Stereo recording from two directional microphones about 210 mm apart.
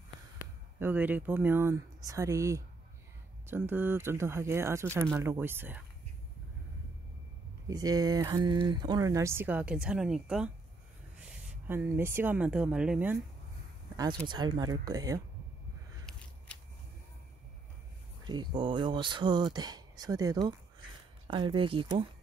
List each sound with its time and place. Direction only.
0.7 s speech: 10° right (ahead or behind)
7.6 s speech: 15° right (ahead or behind)
11.6 s speech: 10° right (ahead or behind)
14.2 s speech: 20° right (ahead or behind)
16.1 s a sound: 5° left (ahead or behind)
18.2 s speech: 20° right (ahead or behind)